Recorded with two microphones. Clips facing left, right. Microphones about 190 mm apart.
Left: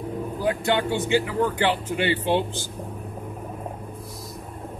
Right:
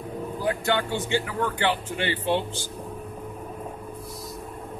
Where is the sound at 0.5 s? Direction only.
15° left (ahead or behind).